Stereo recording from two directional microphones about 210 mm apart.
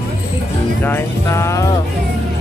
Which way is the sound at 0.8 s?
10° left (ahead or behind).